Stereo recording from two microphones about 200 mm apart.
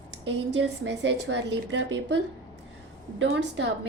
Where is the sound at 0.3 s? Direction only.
60° right (ahead or behind).